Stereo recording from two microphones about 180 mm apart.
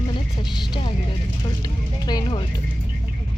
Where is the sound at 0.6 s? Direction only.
25° left (ahead or behind).